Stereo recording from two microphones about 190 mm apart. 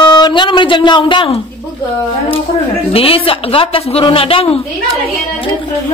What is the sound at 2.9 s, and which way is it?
A woman's voice, 30° left (ahead or behind).